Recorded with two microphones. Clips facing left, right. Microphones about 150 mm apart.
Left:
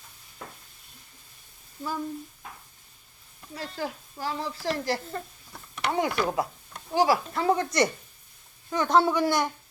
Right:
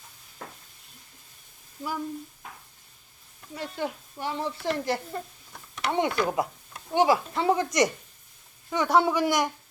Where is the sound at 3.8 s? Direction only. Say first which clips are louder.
Right 1 dB; 20° right (ahead or behind).